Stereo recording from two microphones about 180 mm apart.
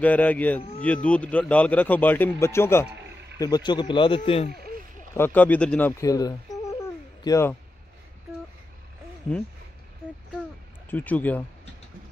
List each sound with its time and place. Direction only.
0.0 s a man's voice: 10° left (ahead or behind)
0.6 s speech: 35° left (ahead or behind)
0.8 s a man's voice: 5° left (ahead or behind); by 4.5 s 35° left (ahead or behind)
5.1 s speech: 10° left (ahead or behind)
10.9 s a man's voice: 10° left (ahead or behind)